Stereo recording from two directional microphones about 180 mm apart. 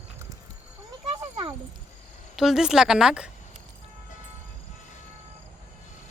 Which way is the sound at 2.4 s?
Centre (ahead or behind).